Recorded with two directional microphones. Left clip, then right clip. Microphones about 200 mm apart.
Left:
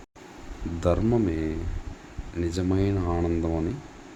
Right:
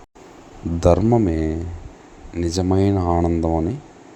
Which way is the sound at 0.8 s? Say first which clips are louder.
Right 8 dB; 25° right (ahead or behind).